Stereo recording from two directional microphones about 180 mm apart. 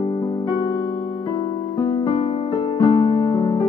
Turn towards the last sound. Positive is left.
turn(degrees=25)  # may be behind; listen again after turning